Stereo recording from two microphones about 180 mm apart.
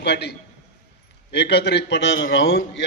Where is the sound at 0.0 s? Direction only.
70° left (ahead or behind).